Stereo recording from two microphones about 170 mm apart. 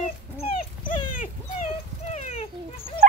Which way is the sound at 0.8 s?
50° left (ahead or behind).